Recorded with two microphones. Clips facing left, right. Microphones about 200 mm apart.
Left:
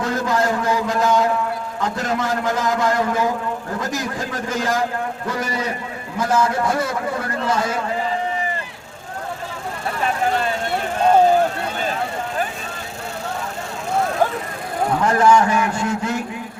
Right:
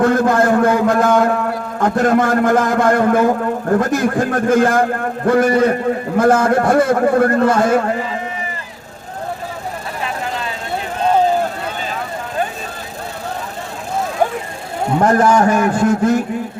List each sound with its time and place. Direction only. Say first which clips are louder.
0.0 s a man's voice: right 7 dB; 55° right (ahead or behind)
15.0 s a man's voice: right 3 dB; 45° right (ahead or behind)